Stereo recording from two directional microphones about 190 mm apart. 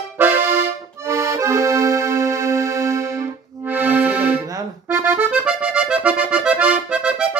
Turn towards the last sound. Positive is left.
turn(degrees=-5)  # may be behind; listen again after turning